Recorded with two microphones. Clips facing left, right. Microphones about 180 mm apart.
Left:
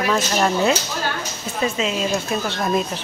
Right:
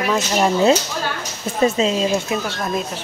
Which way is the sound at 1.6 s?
35° right (ahead or behind).